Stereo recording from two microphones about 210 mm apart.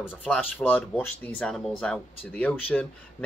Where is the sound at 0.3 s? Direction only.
5° left (ahead or behind).